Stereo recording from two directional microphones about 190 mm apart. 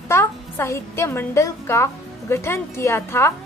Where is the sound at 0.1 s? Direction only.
15° left (ahead or behind).